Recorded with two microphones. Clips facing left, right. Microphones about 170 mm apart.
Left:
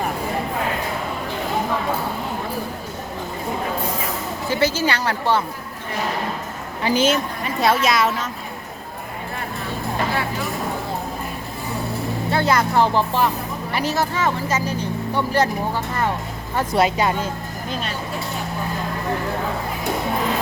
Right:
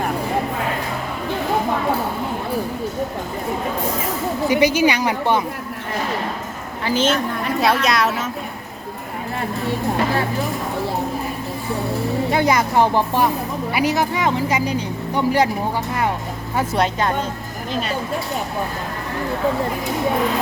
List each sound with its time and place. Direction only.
4.4 s speech: 15° right (ahead or behind)
6.8 s a woman's voice: 10° left (ahead or behind)
12.3 s speech: 15° right (ahead or behind)
16.7 s a woman's voice: 5° left (ahead or behind)